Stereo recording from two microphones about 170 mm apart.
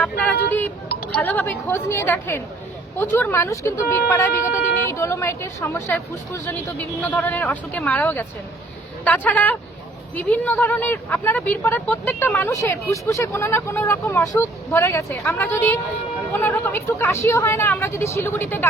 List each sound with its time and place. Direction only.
1.1 s speech: 10° left (ahead or behind)